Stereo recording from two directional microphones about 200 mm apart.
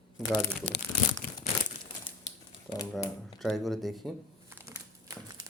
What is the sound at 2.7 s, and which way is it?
Speech, 15° left (ahead or behind).